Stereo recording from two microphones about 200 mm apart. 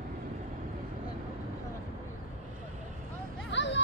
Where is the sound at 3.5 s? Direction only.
60° left (ahead or behind).